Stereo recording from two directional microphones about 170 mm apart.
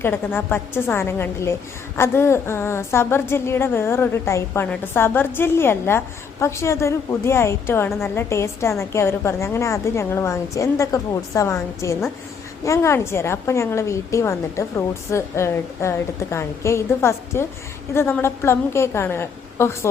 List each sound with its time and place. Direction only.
0.0 s a woman's voice: 10° left (ahead or behind)